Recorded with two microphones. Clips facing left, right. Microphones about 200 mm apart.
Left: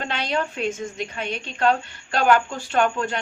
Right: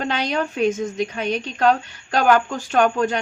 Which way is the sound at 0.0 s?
45° right (ahead or behind).